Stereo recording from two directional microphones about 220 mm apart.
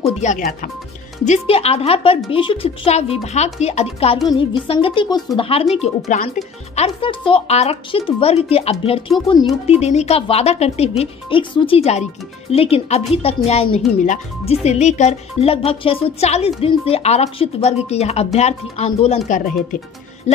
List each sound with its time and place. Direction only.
0.0 s speech: 35° left (ahead or behind)